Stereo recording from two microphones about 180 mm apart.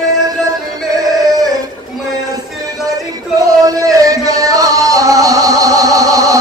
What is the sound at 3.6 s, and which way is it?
Music, 20° right (ahead or behind).